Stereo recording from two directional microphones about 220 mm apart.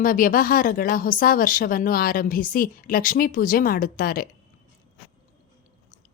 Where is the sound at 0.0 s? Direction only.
40° left (ahead or behind).